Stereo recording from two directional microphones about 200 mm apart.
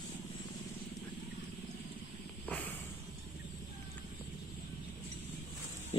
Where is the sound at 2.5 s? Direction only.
10° left (ahead or behind).